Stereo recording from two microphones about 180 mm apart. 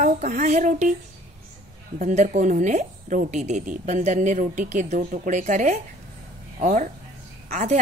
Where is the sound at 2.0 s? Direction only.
40° right (ahead or behind).